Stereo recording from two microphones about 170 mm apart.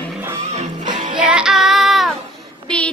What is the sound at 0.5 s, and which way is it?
Music, 45° right (ahead or behind).